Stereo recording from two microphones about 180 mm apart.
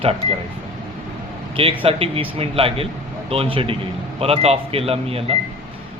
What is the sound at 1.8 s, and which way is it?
A man's voice, 30° right (ahead or behind).